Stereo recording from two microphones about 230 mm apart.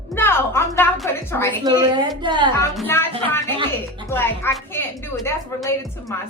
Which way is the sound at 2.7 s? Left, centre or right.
Centre.